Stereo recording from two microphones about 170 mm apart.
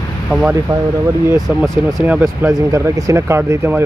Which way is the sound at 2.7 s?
15° right (ahead or behind).